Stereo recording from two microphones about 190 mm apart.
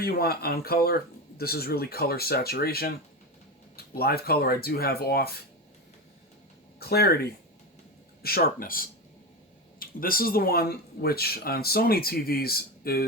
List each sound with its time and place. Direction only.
0.0 s speech: 55° left (ahead or behind)
6.7 s speech: 55° left (ahead or behind)